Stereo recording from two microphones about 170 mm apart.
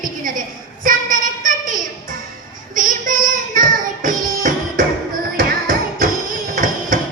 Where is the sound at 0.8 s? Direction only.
50° right (ahead or behind).